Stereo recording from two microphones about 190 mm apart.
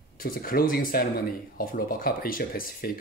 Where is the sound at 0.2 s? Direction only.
50° left (ahead or behind).